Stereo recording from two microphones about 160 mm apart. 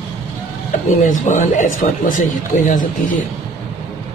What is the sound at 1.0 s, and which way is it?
Speech, 50° left (ahead or behind).